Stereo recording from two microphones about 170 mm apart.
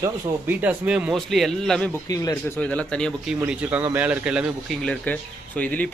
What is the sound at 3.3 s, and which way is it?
Speech, 5° right (ahead or behind).